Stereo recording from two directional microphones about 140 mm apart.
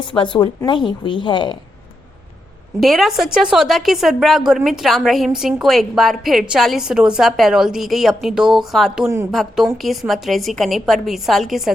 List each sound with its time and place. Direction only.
0.1 s a woman's voice: 35° left (ahead or behind)
2.8 s a woman's voice: centre (ahead or behind)